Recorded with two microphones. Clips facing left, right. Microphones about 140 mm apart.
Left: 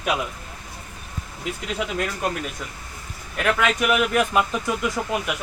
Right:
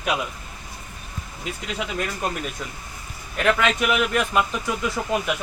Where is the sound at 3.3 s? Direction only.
Centre (ahead or behind).